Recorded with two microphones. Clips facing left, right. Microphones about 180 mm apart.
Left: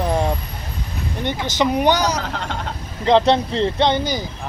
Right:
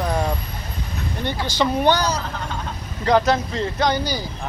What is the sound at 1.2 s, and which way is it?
Speech, 20° left (ahead or behind).